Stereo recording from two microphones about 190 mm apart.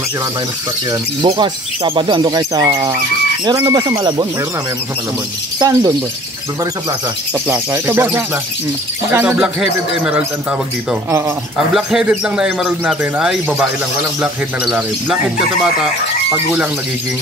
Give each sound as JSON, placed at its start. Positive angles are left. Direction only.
{"t": 1.2, "sound": "speech", "side_deg": -25}
{"t": 5.6, "sound": "speech", "side_deg": -20}
{"t": 7.4, "sound": "speech", "side_deg": -10}
{"t": 11.5, "sound": "speech", "side_deg": 0}